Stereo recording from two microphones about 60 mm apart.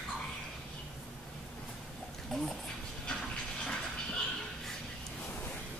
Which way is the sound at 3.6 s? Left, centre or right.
Centre.